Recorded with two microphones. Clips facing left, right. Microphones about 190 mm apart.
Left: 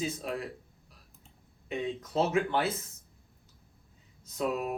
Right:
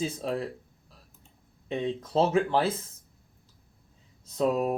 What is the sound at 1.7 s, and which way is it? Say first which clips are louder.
Speech: right 4 dB; 30° right (ahead or behind).